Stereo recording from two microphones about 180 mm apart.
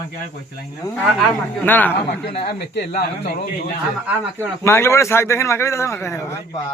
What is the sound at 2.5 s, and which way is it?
Speech, 70° left (ahead or behind).